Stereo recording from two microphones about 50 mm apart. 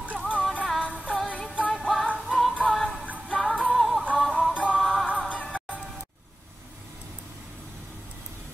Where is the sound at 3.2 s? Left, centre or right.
Left.